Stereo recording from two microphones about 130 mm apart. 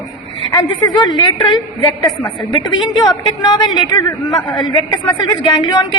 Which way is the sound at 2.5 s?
35° left (ahead or behind).